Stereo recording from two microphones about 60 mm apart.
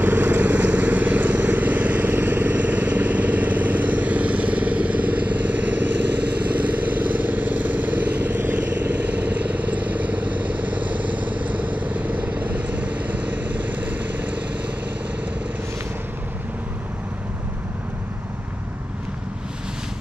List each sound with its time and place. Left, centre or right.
0.0 s vehicle: right